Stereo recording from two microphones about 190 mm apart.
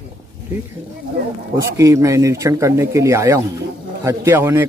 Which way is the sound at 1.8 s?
15° right (ahead or behind).